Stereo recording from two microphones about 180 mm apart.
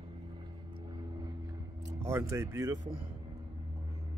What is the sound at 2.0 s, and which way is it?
Speech, 15° right (ahead or behind).